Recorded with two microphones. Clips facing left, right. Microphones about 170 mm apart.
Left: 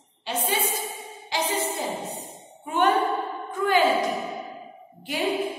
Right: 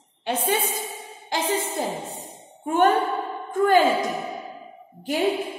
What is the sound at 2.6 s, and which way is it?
Speech, 45° right (ahead or behind).